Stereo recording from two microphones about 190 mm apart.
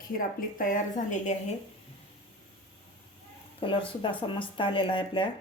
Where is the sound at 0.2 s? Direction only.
45° left (ahead or behind).